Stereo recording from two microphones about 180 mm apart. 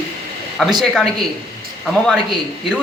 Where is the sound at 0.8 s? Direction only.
Centre (ahead or behind).